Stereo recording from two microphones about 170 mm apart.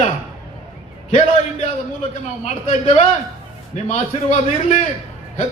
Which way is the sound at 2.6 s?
40° left (ahead or behind).